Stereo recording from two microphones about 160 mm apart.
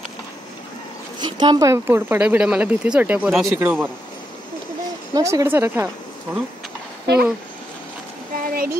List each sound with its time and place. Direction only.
1.2 s speech: 25° right (ahead or behind); by 3.9 s 10° right (ahead or behind)
5.1 s speech: 20° right (ahead or behind)
8.4 s a sound: 65° right (ahead or behind)